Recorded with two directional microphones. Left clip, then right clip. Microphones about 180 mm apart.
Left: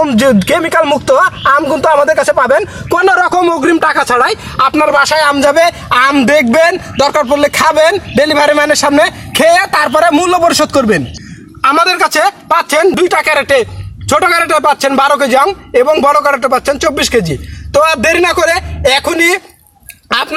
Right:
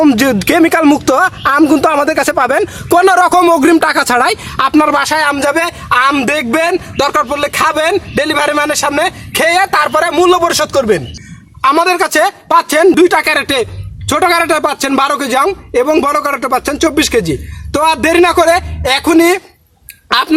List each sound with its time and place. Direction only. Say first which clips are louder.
0.0 s speech: left 1 dB; 40° right (ahead or behind)
4.7 s a man's voice: left 1 dB; 5° right (ahead or behind)